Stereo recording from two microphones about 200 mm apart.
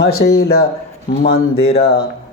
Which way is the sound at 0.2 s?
50° left (ahead or behind).